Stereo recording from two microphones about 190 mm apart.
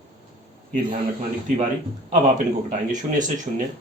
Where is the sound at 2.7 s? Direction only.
40° right (ahead or behind).